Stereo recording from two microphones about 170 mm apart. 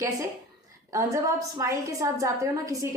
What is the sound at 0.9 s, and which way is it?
A woman's voice, 15° right (ahead or behind).